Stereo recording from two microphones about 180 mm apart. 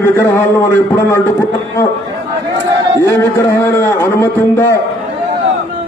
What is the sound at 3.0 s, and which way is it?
A man's voice, 15° left (ahead or behind).